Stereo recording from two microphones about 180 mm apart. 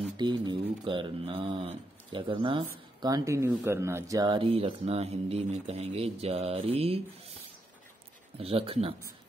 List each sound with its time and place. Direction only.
0.2 s speech: 25° right (ahead or behind)
8.4 s speech: 30° right (ahead or behind)